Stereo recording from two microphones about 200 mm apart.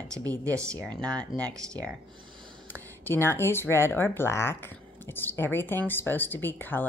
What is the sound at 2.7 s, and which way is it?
Speech, 10° left (ahead or behind).